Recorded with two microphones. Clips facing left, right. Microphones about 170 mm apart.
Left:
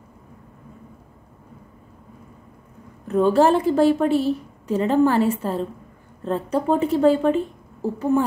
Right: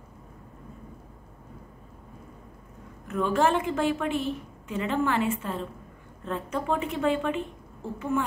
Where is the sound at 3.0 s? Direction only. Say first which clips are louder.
Left 8 dB; 35° left (ahead or behind).